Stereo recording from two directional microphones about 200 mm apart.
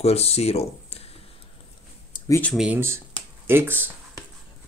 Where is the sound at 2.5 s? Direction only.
5° right (ahead or behind).